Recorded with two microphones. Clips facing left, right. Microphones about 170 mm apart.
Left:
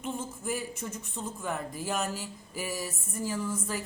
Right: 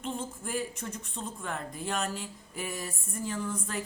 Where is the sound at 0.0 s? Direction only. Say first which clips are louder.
Left 1 dB; 5° left (ahead or behind).